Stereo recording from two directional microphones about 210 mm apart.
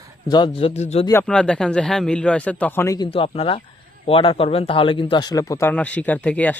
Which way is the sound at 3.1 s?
25° left (ahead or behind).